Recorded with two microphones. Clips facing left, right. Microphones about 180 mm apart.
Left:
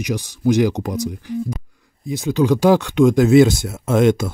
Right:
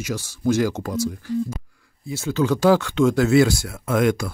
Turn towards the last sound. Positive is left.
turn(degrees=25)  # may be behind; listen again after turning